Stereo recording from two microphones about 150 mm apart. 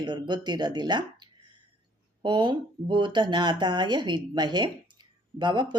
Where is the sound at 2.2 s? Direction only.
30° right (ahead or behind).